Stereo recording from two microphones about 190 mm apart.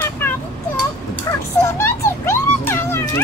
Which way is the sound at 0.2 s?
10° left (ahead or behind).